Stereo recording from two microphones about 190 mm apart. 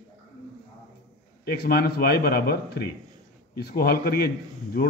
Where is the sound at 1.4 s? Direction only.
55° left (ahead or behind).